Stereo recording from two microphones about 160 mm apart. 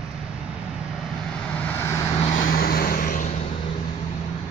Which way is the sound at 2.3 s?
60° left (ahead or behind).